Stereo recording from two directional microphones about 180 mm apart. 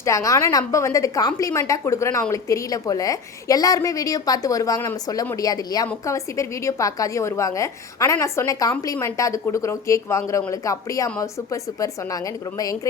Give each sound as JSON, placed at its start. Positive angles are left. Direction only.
{"t": 0.0, "sound": "a woman's voice", "side_deg": 15}